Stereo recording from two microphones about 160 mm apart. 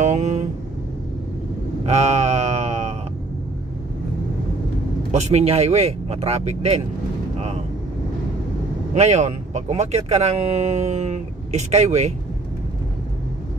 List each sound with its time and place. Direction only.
0.0 s vehicle: 50° right (ahead or behind)
1.9 s a sound: 45° right (ahead or behind)
5.1 s speech: 40° right (ahead or behind)
8.9 s speech: 45° right (ahead or behind)